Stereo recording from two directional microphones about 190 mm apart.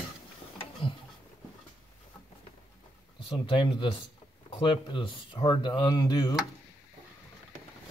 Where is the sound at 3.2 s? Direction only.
25° left (ahead or behind).